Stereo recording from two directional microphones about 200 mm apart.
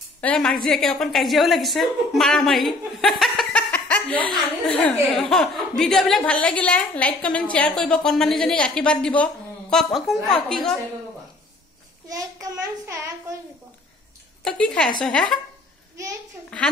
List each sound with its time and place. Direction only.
0.2 s a woman's voice: 5° left (ahead or behind)
12.1 s child singing: 15° right (ahead or behind)
14.4 s a woman's voice: 5° left (ahead or behind)
16.5 s a sound: 5° left (ahead or behind)